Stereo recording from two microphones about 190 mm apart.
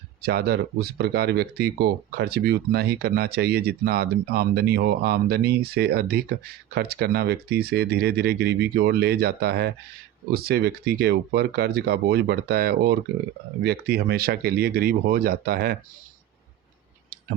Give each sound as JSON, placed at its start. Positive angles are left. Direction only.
{"t": 0.2, "sound": "speech", "side_deg": -55}